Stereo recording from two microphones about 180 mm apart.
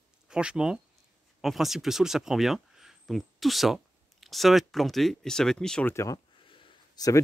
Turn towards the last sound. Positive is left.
turn(degrees=20)  # may be behind; listen again after turning